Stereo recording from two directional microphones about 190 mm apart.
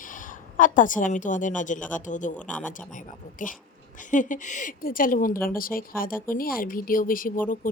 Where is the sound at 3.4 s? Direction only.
45° left (ahead or behind).